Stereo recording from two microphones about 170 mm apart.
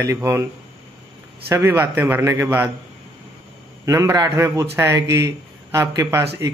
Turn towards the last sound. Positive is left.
turn(degrees=-15)  # may be behind; listen again after turning